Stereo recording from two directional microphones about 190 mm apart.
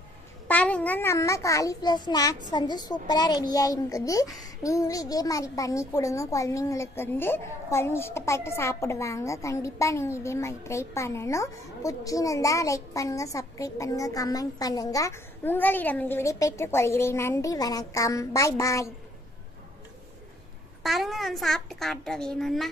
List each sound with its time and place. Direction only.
0.5 s a child's voice: 5° left (ahead or behind)
20.8 s a child's voice: centre (ahead or behind)